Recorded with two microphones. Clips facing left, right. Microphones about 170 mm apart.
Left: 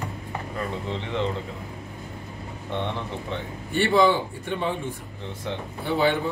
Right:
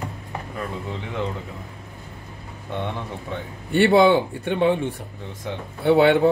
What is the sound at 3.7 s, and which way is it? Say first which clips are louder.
Speech: right 5 dB; 65° right (ahead or behind).